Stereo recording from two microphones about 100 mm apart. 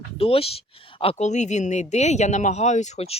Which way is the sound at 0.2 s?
75° left (ahead or behind).